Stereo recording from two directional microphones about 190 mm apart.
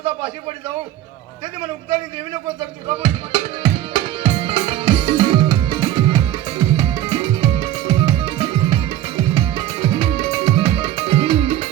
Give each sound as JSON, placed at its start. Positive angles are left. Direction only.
{"t": 2.9, "sound": "music", "side_deg": -25}